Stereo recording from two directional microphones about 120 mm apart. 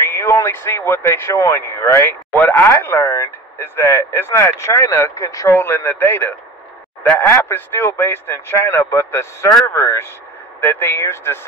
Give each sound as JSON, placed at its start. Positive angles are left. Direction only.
{"t": 0.1, "sound": "speech", "side_deg": 25}